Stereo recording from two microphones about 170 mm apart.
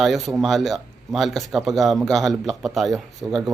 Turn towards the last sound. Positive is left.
turn(degrees=0)  # may be behind; listen again after turning